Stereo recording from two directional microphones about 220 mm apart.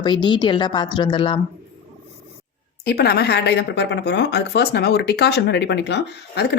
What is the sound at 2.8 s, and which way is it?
Speech, 45° left (ahead or behind).